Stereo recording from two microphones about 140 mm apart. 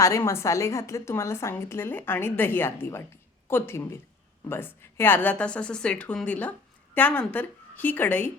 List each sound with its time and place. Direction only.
0.0 s a woman's voice: 20° left (ahead or behind)